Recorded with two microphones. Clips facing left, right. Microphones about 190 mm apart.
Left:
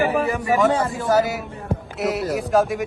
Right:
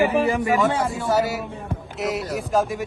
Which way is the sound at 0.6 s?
Centre (ahead or behind).